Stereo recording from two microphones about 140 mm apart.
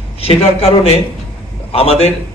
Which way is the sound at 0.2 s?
45° left (ahead or behind).